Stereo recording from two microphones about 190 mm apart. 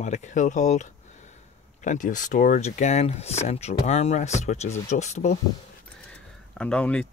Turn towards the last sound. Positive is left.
turn(degrees=5)  # may be behind; listen again after turning